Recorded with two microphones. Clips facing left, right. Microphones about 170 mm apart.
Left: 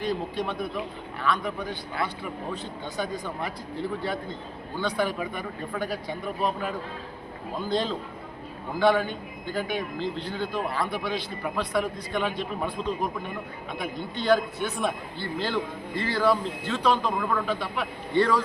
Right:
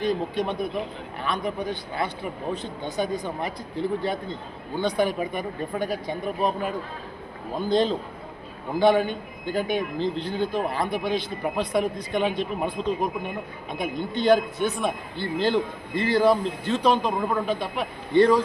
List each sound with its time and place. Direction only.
0.0 s a man's voice: 20° right (ahead or behind)
4.8 s a man's voice: 20° right (ahead or behind)
7.7 s a man's voice: 20° right (ahead or behind)